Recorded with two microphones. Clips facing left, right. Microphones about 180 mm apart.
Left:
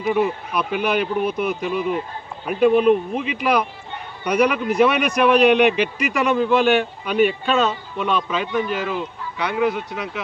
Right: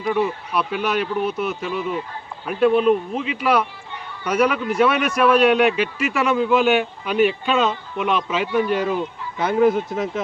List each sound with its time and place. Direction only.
0.0 s speech: 5° left (ahead or behind)
4.4 s speech: centre (ahead or behind)
8.4 s speech: 15° right (ahead or behind)
9.4 s speech: 45° right (ahead or behind)